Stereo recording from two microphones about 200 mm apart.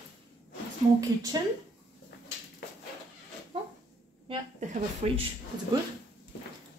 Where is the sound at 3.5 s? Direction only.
30° right (ahead or behind).